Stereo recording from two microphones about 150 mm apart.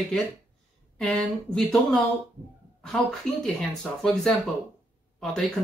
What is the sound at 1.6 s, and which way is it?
Speech, centre (ahead or behind).